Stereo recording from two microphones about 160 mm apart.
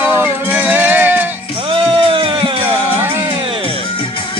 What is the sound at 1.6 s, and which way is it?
Music, 35° right (ahead or behind).